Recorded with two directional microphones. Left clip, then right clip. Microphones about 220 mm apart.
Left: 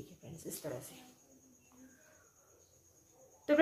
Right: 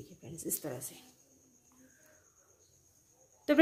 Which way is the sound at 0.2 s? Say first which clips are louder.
Right 7 dB; 50° right (ahead or behind).